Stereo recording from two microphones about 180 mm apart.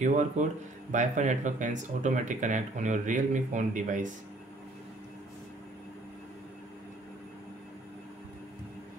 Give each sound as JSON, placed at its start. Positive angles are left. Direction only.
{"t": 0.4, "sound": "speech", "side_deg": -40}